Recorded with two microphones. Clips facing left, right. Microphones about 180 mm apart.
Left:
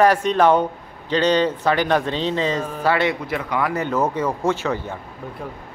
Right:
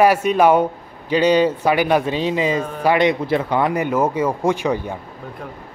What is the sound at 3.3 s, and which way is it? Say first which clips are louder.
Speech: right 5 dB; 30° right (ahead or behind).